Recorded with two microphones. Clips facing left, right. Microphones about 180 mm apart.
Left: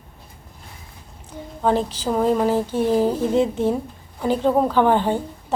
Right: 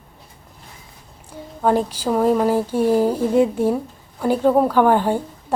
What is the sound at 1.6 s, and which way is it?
A woman's voice, 10° right (ahead or behind).